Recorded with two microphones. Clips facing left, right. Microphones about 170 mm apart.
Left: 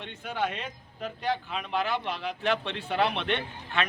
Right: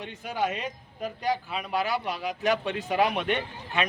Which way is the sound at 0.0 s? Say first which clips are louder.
Right 2 dB; 10° right (ahead or behind).